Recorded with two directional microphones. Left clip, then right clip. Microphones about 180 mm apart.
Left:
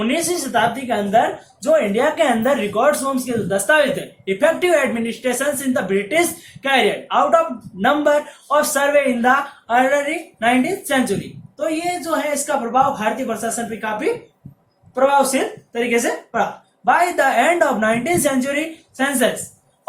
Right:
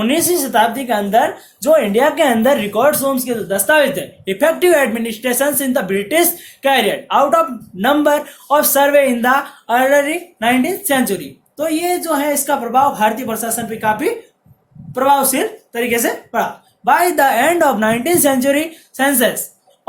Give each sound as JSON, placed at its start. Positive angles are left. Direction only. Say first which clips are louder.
{"t": 0.0, "sound": "speech", "louder": "right 4 dB", "side_deg": -55}